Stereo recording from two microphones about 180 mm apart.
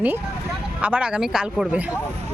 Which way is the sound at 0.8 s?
5° right (ahead or behind).